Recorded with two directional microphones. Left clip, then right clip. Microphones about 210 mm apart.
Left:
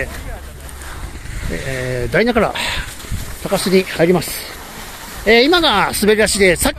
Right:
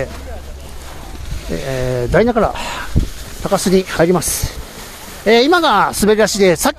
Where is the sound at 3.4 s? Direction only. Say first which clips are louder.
Right 1 dB; 20° right (ahead or behind).